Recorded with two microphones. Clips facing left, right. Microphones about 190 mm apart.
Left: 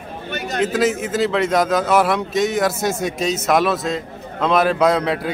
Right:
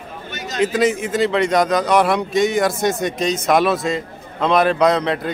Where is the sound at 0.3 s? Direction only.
60° left (ahead or behind).